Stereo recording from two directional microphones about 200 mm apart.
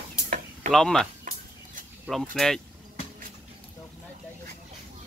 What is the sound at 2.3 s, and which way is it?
Speech, centre (ahead or behind).